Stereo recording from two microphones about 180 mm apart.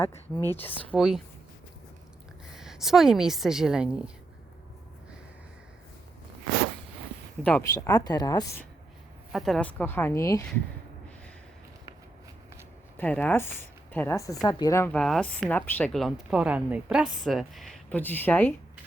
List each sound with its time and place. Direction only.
0.0 s speech: 15° left (ahead or behind)
0.9 s speech: centre (ahead or behind)
2.5 s a woman's voice: centre (ahead or behind)
7.4 s speech: 10° left (ahead or behind)
9.3 s speech: centre (ahead or behind); by 10.4 s 15° left (ahead or behind)
13.0 s speech: 5° left (ahead or behind)